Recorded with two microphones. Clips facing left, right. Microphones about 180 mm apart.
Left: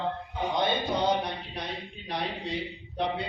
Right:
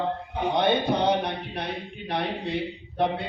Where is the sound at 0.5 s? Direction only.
60° right (ahead or behind).